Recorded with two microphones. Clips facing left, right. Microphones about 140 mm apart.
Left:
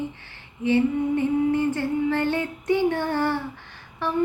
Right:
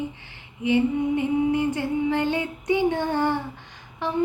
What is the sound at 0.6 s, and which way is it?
Female singing, 15° right (ahead or behind).